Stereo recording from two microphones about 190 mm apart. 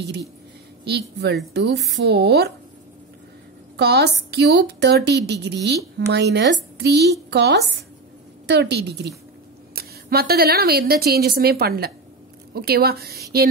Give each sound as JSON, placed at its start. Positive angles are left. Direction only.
{"t": 0.8, "sound": "a woman's voice", "side_deg": -60}
{"t": 3.7, "sound": "a woman's voice", "side_deg": -60}